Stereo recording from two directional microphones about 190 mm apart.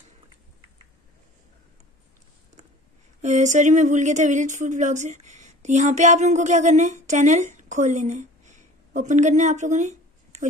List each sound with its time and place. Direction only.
3.2 s speech: 40° right (ahead or behind)